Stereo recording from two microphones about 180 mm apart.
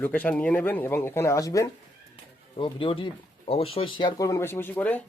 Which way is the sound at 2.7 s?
30° left (ahead or behind).